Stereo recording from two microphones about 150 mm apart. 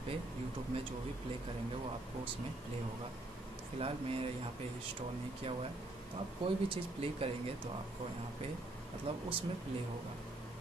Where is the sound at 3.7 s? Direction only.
40° right (ahead or behind).